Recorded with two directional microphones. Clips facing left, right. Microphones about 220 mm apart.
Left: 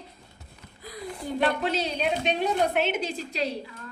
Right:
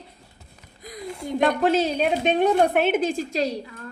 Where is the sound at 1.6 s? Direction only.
50° right (ahead or behind).